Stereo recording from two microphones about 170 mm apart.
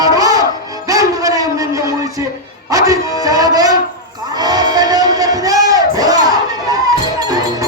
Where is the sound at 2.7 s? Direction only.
20° right (ahead or behind).